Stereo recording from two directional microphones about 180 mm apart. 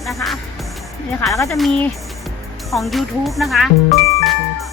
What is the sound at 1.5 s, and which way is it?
Speech, centre (ahead or behind).